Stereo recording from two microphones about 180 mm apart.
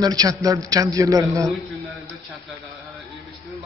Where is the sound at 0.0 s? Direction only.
20° right (ahead or behind).